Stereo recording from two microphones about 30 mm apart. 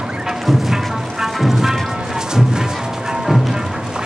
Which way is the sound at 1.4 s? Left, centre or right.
Centre.